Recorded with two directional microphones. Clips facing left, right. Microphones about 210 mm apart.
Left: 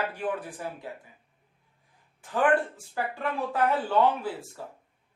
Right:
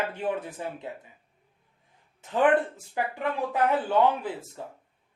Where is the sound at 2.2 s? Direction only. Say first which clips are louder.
Right 2 dB; 20° right (ahead or behind).